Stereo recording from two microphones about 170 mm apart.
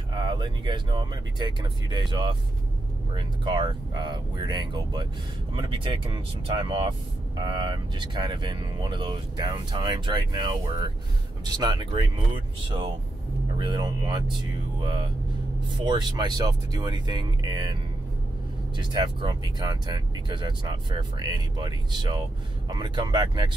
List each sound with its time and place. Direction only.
0.1 s speech: 25° right (ahead or behind)
15.8 s speech: 25° right (ahead or behind)
18.8 s speech: 25° right (ahead or behind)